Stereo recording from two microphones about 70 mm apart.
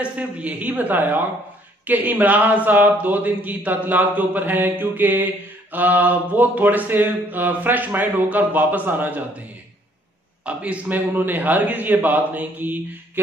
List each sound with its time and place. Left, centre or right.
0.0 s speech: right
10.4 s speech: centre